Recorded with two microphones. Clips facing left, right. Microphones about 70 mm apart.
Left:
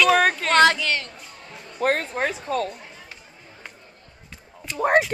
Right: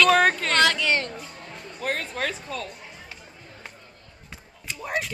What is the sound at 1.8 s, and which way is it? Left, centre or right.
A woman's voice, left.